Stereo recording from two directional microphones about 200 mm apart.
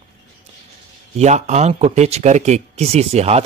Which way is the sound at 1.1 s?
35° right (ahead or behind).